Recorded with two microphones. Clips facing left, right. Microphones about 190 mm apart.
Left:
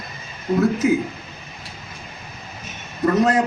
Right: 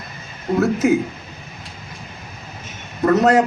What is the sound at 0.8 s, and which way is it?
Speech, 75° right (ahead or behind).